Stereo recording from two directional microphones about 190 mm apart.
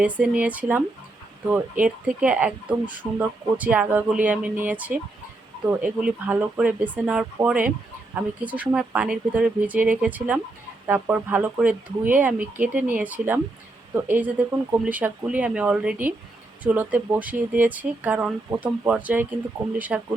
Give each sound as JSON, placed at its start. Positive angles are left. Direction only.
{"t": 0.0, "sound": "speech", "side_deg": -10}
{"t": 6.0, "sound": "speech", "side_deg": -10}